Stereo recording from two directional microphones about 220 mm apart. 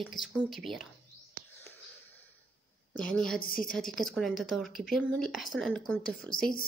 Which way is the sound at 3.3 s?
40° left (ahead or behind).